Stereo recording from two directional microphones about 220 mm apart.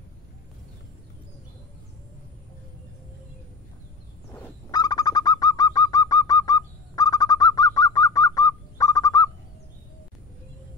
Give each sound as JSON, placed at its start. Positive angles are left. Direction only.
{"t": 4.3, "sound": "bird", "side_deg": 15}